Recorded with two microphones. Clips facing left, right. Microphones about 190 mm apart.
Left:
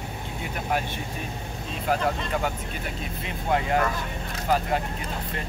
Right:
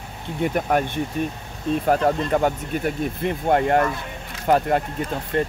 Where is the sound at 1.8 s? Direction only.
45° right (ahead or behind).